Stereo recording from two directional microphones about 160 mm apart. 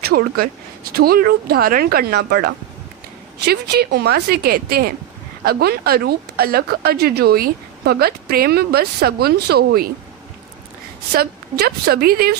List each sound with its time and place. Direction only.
0.0 s a woman's voice: 75° right (ahead or behind)
11.1 s speech: 75° right (ahead or behind)